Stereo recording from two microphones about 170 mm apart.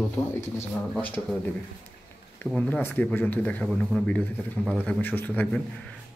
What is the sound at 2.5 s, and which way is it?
Speech, 5° left (ahead or behind).